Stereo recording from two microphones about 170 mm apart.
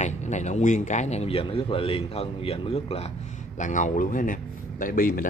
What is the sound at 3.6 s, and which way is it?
Speech, 50° left (ahead or behind).